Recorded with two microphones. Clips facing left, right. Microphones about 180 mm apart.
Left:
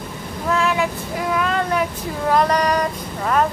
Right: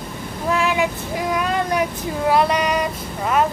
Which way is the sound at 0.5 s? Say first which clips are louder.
Even; 15° right (ahead or behind).